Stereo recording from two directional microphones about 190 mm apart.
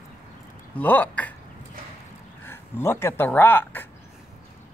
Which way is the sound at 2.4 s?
15° left (ahead or behind).